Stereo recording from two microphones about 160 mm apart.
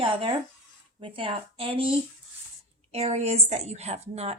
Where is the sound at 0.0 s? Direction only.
35° right (ahead or behind).